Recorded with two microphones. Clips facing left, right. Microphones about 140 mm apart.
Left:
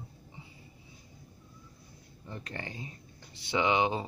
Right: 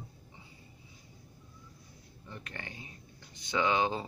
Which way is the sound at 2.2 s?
30° left (ahead or behind).